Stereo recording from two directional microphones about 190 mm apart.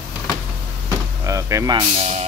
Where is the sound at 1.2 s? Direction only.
15° right (ahead or behind).